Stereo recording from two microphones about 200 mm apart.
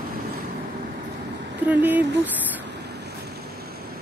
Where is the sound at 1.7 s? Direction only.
10° right (ahead or behind).